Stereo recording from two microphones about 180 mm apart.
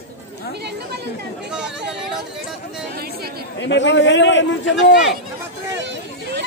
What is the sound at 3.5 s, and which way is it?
A man's voice, 80° left.